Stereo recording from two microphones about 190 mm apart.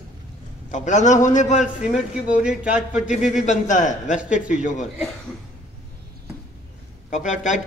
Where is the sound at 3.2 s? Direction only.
40° left (ahead or behind).